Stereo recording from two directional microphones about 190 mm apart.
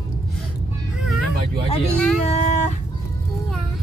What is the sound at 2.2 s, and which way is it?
Speech, 35° left (ahead or behind).